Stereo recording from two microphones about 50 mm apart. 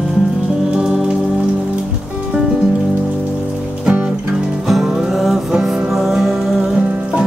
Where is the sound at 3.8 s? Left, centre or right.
Right.